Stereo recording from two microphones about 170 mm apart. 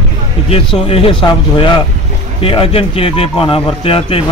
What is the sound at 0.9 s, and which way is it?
A man's voice, 30° left (ahead or behind).